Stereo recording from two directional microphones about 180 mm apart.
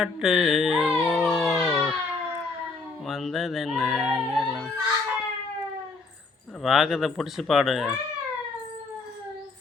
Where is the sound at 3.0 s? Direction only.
Centre (ahead or behind).